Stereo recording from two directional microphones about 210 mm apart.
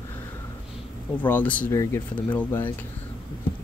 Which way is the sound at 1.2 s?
10° left (ahead or behind).